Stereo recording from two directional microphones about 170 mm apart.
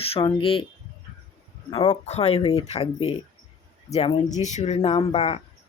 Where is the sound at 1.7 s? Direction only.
35° left (ahead or behind).